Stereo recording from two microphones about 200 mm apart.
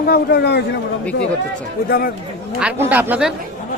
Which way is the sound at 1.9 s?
50° left (ahead or behind).